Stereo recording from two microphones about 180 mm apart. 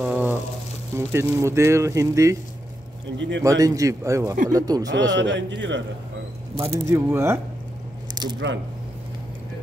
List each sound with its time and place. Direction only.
0.0 s a sound: 10° right (ahead or behind)
0.9 s speech: 15° right (ahead or behind)
3.2 s a man's voice: 80° right
3.4 s speech: 20° right (ahead or behind)
5.1 s a man's voice: 80° right
6.5 s speech: 30° right (ahead or behind)
6.9 s speech: 15° right (ahead or behind)
8.1 s squish: 25° right (ahead or behind)